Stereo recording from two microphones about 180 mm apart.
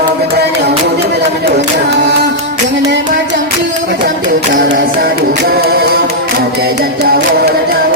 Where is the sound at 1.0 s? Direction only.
70° right (ahead or behind).